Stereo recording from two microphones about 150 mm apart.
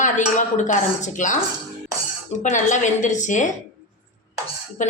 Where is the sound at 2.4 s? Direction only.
55° left (ahead or behind).